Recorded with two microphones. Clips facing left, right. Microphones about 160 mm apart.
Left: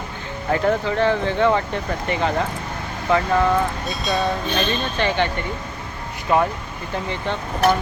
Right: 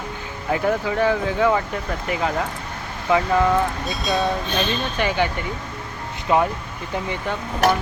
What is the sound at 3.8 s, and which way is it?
Speech, centre (ahead or behind).